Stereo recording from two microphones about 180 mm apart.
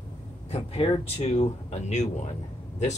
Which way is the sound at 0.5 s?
35° left (ahead or behind).